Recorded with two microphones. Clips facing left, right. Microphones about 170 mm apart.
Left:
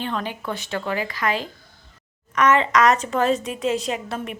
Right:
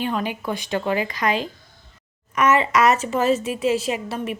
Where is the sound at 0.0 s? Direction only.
10° right (ahead or behind).